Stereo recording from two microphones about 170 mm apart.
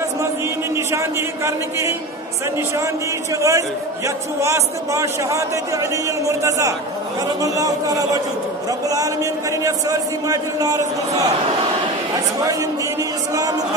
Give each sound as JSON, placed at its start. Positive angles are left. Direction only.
{"t": 0.7, "sound": "a man's voice", "side_deg": -15}
{"t": 3.3, "sound": "a man's voice", "side_deg": -20}
{"t": 13.3, "sound": "a man's voice", "side_deg": -20}